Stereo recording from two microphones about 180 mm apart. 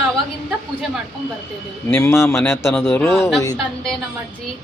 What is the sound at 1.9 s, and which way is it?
Speech, 15° left (ahead or behind).